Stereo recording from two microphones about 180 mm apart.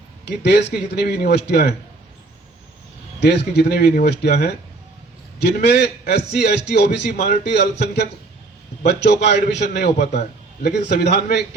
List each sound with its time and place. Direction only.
0.3 s a man's voice: 70° left (ahead or behind)
3.2 s a man's voice: 60° left (ahead or behind)